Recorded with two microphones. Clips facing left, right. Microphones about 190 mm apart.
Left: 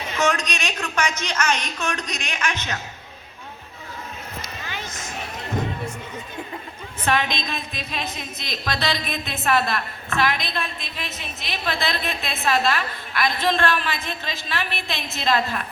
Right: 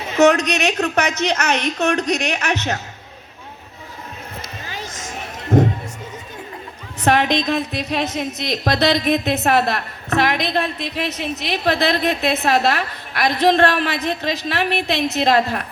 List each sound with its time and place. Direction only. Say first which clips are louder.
0.2 s a woman's voice: right 10 dB; 65° right (ahead or behind)
7.0 s a woman's voice: right 7 dB; 75° right (ahead or behind)